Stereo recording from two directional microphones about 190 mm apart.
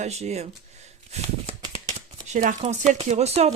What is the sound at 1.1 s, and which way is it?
Shuffling cards, 35° right (ahead or behind).